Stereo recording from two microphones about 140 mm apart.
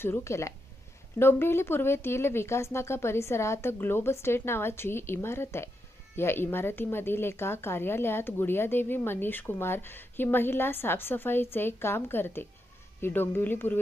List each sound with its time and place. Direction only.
0.0 s speech: 20° left (ahead or behind)